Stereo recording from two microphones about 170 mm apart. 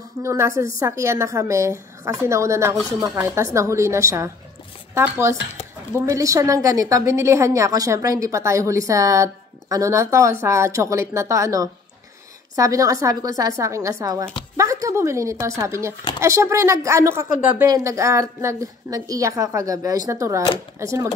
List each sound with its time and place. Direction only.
0.2 s a woman's voice: 15° right (ahead or behind)